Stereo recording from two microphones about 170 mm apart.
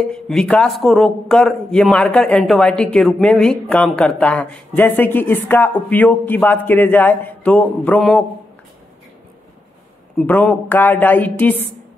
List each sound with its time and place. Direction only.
0.1 s a man's voice: 5° left (ahead or behind)
10.1 s a man's voice: 10° left (ahead or behind)